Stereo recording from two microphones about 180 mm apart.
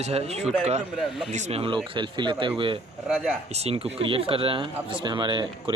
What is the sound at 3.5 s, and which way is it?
A man's voice, 35° right (ahead or behind).